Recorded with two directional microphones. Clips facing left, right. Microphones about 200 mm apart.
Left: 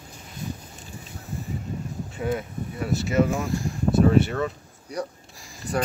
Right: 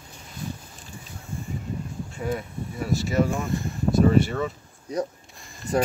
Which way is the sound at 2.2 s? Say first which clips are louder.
Left 2 dB; centre (ahead or behind).